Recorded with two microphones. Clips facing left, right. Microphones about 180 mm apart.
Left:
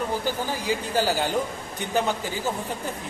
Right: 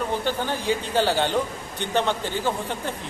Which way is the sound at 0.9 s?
25° right (ahead or behind).